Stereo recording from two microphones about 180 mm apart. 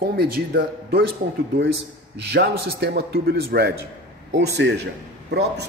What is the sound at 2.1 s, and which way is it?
Speech, 65° right (ahead or behind).